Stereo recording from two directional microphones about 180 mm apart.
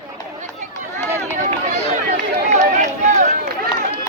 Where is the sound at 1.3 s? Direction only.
45° right (ahead or behind).